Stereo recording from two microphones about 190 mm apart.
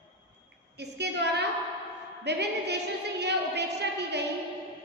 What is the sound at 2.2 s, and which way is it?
A woman's voice, 60° right (ahead or behind).